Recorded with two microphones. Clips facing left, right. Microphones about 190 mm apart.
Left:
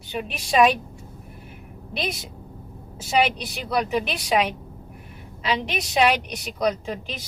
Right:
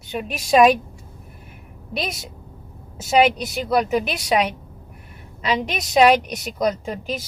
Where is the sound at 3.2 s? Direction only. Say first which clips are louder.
Right 7 dB; 45° right (ahead or behind).